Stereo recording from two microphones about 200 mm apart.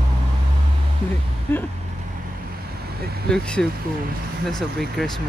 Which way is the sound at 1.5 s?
10° left (ahead or behind).